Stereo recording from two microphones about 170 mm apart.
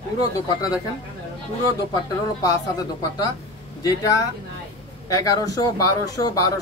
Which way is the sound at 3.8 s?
20° left (ahead or behind).